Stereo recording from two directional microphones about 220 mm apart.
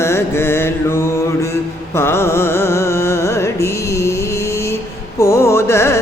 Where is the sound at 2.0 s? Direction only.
10° left (ahead or behind).